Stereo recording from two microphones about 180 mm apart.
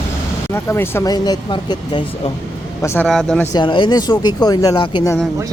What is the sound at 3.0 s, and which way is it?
Speech, centre (ahead or behind).